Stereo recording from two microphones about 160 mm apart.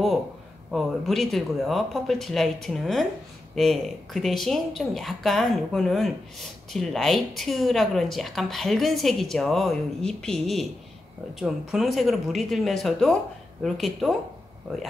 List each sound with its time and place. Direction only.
0.7 s a woman's voice: centre (ahead or behind)